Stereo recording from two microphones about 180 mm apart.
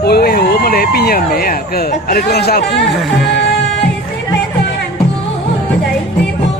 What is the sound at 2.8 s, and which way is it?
Speech, centre (ahead or behind).